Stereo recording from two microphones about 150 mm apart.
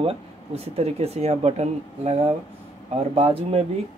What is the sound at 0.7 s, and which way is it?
Speech, 45° right (ahead or behind).